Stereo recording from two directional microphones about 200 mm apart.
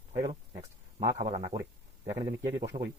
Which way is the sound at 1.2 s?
35° right (ahead or behind).